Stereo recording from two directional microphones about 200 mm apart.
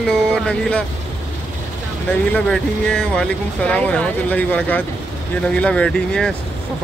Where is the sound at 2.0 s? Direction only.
5° left (ahead or behind).